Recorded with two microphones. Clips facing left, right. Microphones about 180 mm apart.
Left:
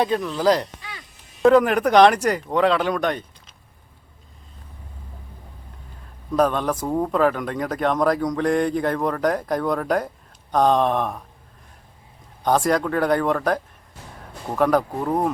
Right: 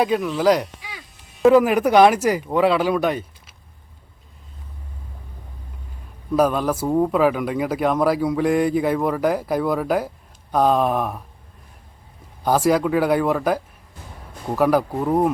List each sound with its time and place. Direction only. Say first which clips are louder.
0.0 s speech: right 2 dB; 5° right (ahead or behind)
6.3 s speech: right 2 dB; 5° right (ahead or behind)
12.4 s speech: right 2 dB; 5° right (ahead or behind)